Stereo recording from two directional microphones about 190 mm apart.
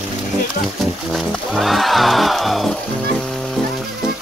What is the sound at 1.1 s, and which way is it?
Music, centre (ahead or behind).